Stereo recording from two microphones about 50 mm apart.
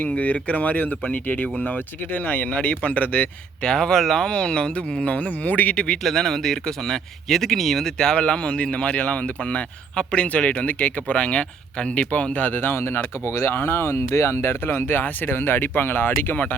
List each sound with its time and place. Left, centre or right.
0.0 s speech: left
3.6 s speech: centre; by 5.7 s left
5.7 s speech: left
6.0 s speech: centre
7.9 s speech: centre; by 16.4 s left